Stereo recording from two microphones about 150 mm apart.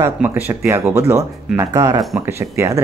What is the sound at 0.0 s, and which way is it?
Speech, 15° right (ahead or behind).